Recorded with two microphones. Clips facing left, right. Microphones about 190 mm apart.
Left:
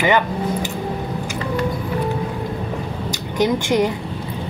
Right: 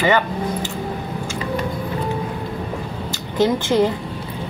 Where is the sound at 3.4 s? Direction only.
15° left (ahead or behind).